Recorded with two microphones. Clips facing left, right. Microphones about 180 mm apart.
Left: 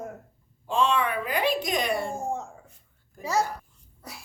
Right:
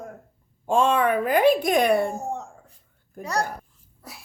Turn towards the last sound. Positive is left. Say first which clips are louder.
# left 1 dB
turn(degrees=0)  # may be behind; listen again after turning